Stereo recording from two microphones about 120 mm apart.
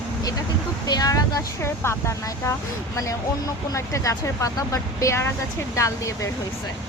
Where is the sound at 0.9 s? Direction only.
30° left (ahead or behind).